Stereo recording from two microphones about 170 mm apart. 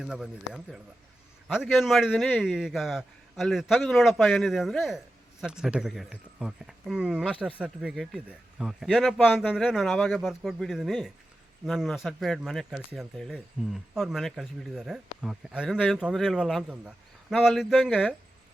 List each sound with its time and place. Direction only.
0.0 s a man's voice: 5° right (ahead or behind)